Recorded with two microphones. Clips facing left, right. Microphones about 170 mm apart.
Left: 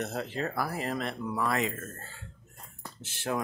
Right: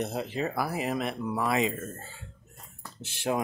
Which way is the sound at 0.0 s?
15° right (ahead or behind).